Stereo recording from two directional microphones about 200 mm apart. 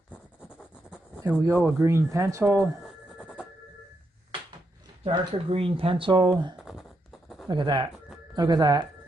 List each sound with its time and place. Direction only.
0.1 s writing: 5° left (ahead or behind)
1.2 s speech: 10° right (ahead or behind)
2.8 s a sound: 5° left (ahead or behind)
5.0 s speech: 25° right (ahead or behind)
6.6 s a sound: centre (ahead or behind)
7.4 s speech: 20° right (ahead or behind)